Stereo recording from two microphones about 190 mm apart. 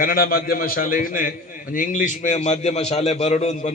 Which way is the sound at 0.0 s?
50° left (ahead or behind).